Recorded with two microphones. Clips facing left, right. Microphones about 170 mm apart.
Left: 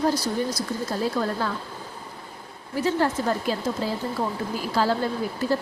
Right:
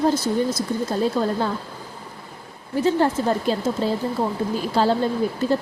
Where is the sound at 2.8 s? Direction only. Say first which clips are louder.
Right 4 dB; 25° right (ahead or behind).